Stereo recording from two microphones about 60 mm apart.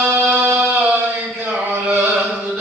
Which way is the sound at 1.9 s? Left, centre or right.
Right.